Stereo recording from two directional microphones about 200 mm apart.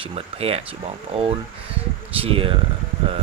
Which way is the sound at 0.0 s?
30° right (ahead or behind).